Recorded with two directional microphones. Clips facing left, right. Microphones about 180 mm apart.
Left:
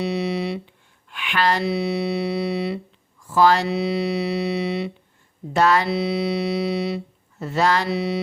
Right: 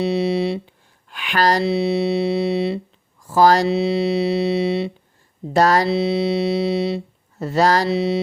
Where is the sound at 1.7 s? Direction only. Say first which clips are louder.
Right 4 dB; 25° right (ahead or behind).